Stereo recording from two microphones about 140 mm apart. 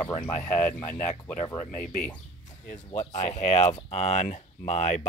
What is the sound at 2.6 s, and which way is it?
Speech, 60° left (ahead or behind).